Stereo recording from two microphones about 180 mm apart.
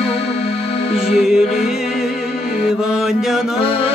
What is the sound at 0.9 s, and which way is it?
Music, centre (ahead or behind).